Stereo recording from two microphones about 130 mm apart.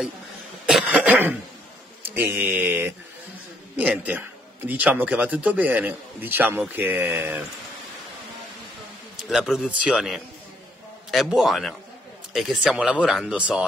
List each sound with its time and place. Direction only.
0.7 s cough: 10° right (ahead or behind)
2.1 s a man's voice: 15° right (ahead or behind)
9.3 s speech: centre (ahead or behind)